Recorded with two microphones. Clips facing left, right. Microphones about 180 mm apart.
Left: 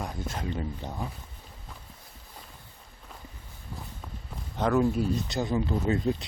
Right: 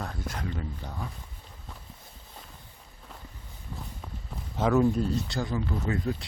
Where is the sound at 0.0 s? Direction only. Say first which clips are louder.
Left 1 dB; 20° left (ahead or behind).